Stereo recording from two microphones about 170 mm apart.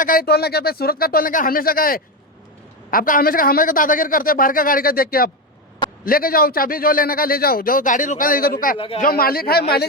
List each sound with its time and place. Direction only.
0.0 s a man's voice: 60° left (ahead or behind)